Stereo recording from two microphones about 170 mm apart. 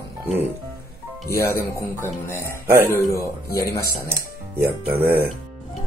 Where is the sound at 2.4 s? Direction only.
15° right (ahead or behind).